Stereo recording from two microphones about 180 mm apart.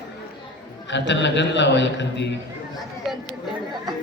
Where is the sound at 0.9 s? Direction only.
85° left.